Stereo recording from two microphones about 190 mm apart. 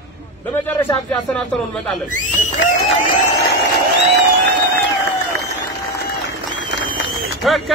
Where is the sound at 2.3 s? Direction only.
40° left (ahead or behind).